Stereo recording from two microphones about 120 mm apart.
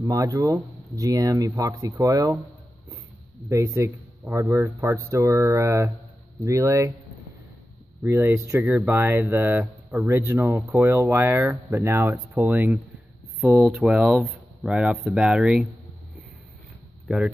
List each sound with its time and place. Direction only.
0.0 s speech: 25° right (ahead or behind)
3.4 s speech: 25° right (ahead or behind)
8.0 s speech: 20° right (ahead or behind)
13.7 s speech: 5° right (ahead or behind)
17.1 s speech: 10° right (ahead or behind)